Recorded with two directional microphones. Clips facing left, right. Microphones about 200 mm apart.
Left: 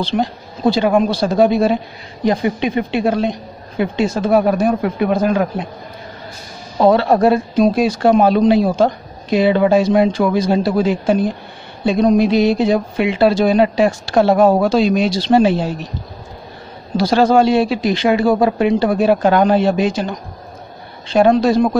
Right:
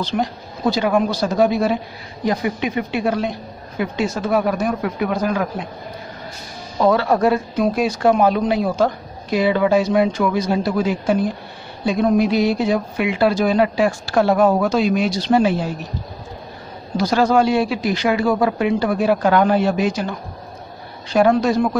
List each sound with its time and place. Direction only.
0.0 s speech: 30° left (ahead or behind)
6.8 s speech: 30° left (ahead or behind)
16.9 s speech: 30° left (ahead or behind)